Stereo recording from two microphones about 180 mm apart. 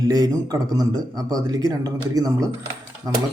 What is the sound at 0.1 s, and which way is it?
A man's voice, 20° right (ahead or behind).